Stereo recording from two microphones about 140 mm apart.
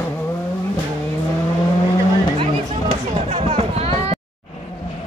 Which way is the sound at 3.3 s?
45° right (ahead or behind).